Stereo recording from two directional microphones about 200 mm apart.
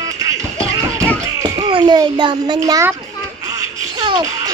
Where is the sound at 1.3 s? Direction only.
15° right (ahead or behind).